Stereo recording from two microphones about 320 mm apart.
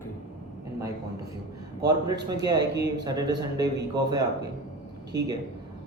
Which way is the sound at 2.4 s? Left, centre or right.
Centre.